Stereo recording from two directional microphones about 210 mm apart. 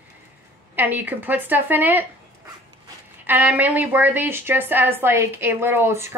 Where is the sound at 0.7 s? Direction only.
10° right (ahead or behind).